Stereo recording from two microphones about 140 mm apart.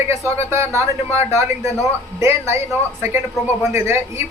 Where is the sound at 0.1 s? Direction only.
20° right (ahead or behind).